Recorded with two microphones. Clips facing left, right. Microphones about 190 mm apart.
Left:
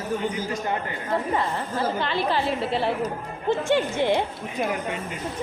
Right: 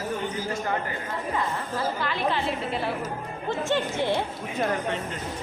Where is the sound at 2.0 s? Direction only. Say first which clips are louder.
Left 2 dB; 30° left (ahead or behind).